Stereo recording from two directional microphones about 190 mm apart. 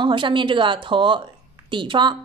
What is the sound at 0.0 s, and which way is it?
A woman's voice, 25° right (ahead or behind).